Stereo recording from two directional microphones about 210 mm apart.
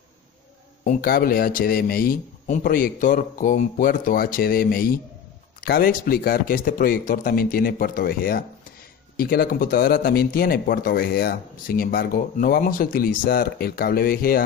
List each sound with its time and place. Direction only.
0.8 s speech: 45° left (ahead or behind)